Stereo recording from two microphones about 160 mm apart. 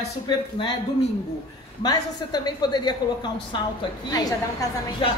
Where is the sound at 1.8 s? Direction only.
25° left (ahead or behind).